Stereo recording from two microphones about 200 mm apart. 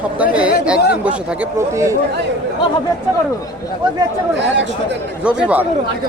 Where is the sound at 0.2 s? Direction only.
5° right (ahead or behind).